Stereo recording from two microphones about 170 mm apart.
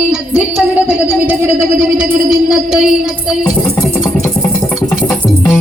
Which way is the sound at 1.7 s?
5° right (ahead or behind).